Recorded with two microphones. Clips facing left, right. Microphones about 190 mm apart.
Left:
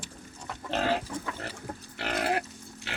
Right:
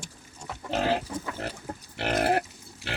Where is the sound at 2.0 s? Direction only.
60° right (ahead or behind).